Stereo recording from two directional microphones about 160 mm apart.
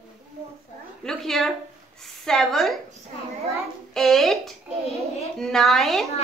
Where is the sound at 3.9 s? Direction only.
Centre (ahead or behind).